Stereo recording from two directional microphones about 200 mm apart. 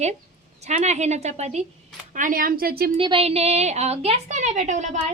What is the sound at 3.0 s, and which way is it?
A woman's voice, 25° right (ahead or behind).